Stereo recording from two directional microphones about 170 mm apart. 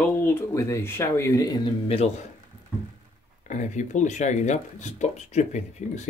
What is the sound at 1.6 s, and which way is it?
Speech, 35° left (ahead or behind).